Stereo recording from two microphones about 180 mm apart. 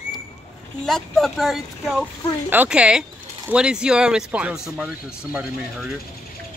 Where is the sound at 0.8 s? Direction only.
Centre (ahead or behind).